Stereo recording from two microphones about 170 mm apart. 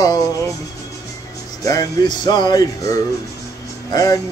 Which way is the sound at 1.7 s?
20° left (ahead or behind).